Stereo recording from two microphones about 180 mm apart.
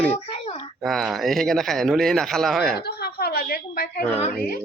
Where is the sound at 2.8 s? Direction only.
60° left (ahead or behind).